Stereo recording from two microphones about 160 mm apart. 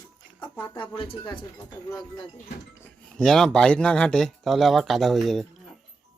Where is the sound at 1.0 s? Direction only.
30° left (ahead or behind).